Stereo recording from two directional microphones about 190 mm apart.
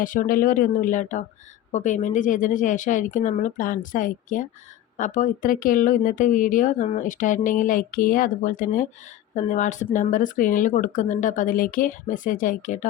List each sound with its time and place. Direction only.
0.0 s speech: 45° left (ahead or behind)